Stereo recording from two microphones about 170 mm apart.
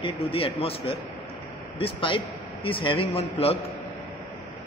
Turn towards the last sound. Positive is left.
turn(degrees=35)  # may be behind; listen again after turning